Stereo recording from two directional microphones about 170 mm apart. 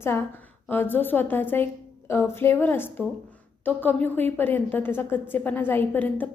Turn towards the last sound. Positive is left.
turn(degrees=10)  # may be behind; listen again after turning